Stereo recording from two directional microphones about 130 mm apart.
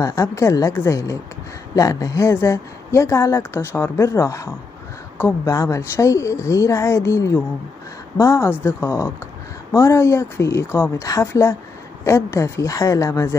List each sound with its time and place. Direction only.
0.0 s speech: 25° left (ahead or behind)